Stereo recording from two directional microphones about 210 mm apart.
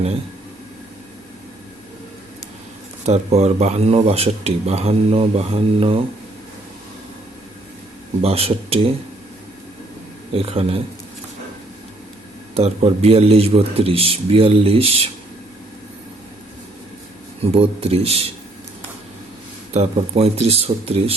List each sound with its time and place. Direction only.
3.1 s speech: 30° right (ahead or behind)
8.2 s speech: 30° right (ahead or behind)
10.3 s speech: 30° right (ahead or behind)
12.5 s speech: 30° right (ahead or behind)
17.4 s speech: 30° right (ahead or behind)
19.7 s speech: 30° right (ahead or behind)